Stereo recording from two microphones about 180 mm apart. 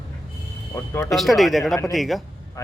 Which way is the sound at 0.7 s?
15° left (ahead or behind).